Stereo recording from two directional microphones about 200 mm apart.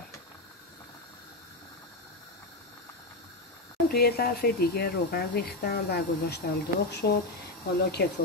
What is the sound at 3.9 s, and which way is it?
Speech, 50° left (ahead or behind).